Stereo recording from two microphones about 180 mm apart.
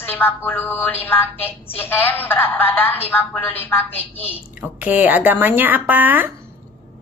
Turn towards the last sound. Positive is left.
turn(degrees=-10)  # may be behind; listen again after turning